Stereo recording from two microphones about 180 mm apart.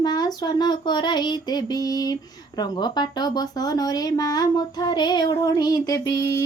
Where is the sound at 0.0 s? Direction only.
20° left (ahead or behind).